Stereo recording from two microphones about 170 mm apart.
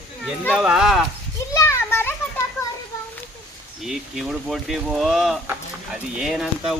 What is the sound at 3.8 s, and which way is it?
Speech, centre (ahead or behind).